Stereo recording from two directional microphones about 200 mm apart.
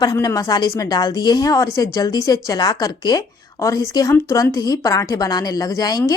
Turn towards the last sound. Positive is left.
turn(degrees=20)  # may be behind; listen again after turning